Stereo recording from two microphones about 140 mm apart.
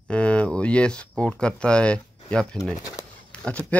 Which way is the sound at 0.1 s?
10° left (ahead or behind).